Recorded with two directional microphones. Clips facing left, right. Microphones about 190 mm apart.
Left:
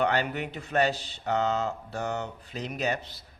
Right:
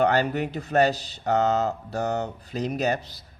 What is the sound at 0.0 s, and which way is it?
Speech, 40° right (ahead or behind).